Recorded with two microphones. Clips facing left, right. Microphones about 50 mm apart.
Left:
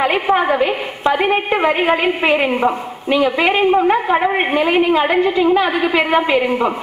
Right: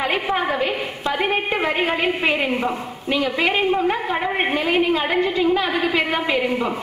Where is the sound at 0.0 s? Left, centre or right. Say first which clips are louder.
Left 6 dB; centre.